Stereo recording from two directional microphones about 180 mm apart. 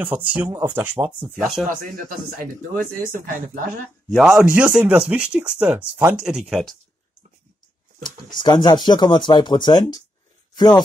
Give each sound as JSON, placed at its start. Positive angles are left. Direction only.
{"t": 0.0, "sound": "speech", "side_deg": -10}
{"t": 1.4, "sound": "speech", "side_deg": 0}
{"t": 1.7, "sound": "speech", "side_deg": -50}
{"t": 4.1, "sound": "speech", "side_deg": 0}
{"t": 8.0, "sound": "speech", "side_deg": 25}
{"t": 10.5, "sound": "a sound", "side_deg": 25}